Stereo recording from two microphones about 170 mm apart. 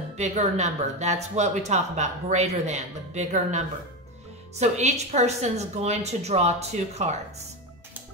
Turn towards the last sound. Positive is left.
turn(degrees=-40)  # may be behind; listen again after turning